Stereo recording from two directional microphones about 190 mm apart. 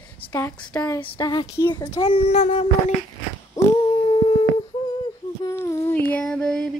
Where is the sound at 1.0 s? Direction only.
25° left (ahead or behind).